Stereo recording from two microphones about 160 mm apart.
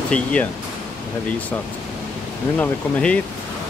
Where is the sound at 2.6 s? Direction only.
5° left (ahead or behind).